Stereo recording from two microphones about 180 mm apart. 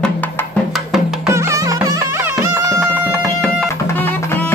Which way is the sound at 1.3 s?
15° right (ahead or behind).